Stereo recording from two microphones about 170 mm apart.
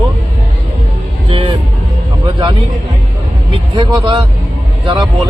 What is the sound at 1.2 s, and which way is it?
Vehicle, 35° right (ahead or behind).